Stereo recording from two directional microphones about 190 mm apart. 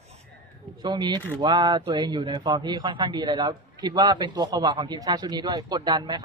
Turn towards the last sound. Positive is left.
turn(degrees=-20)  # may be behind; listen again after turning